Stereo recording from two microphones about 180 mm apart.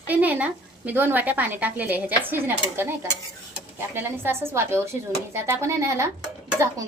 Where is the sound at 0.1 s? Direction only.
10° right (ahead or behind).